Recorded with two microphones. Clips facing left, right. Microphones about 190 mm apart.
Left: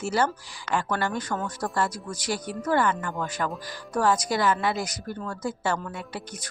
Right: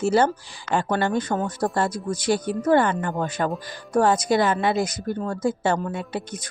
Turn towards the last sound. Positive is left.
turn(degrees=-25)  # may be behind; listen again after turning